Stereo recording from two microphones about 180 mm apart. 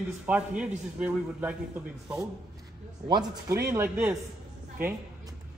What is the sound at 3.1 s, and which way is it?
A man's voice, 20° right (ahead or behind).